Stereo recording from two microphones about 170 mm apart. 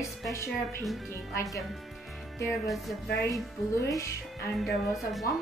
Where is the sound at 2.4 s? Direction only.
20° left (ahead or behind).